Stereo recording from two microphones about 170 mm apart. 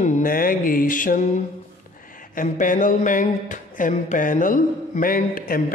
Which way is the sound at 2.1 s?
50° left (ahead or behind).